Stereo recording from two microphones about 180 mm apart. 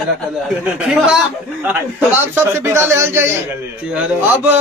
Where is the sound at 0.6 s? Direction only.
5° right (ahead or behind).